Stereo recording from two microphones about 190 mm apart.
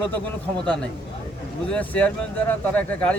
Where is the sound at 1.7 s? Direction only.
10° left (ahead or behind).